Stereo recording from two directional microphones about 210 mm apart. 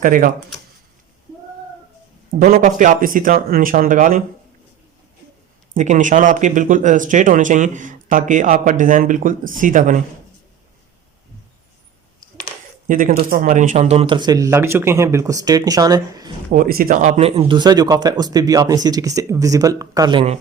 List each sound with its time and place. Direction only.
0.0 s speech: 40° right (ahead or behind)
2.3 s speech: 40° right (ahead or behind)
5.7 s speech: 35° right (ahead or behind)
12.9 s speech: 40° right (ahead or behind); by 16.3 s 15° right (ahead or behind)
16.5 s speech: 40° right (ahead or behind)